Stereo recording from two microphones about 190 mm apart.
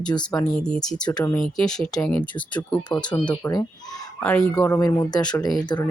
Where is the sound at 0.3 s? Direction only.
5° left (ahead or behind).